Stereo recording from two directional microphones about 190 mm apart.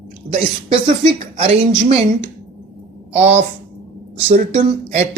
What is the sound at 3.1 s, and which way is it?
A woman's voice, 35° right (ahead or behind).